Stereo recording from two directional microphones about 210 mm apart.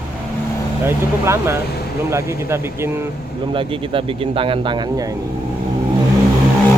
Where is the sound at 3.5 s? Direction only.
25° right (ahead or behind).